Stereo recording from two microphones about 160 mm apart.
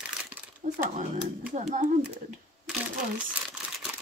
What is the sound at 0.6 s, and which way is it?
Speech, 50° right (ahead or behind).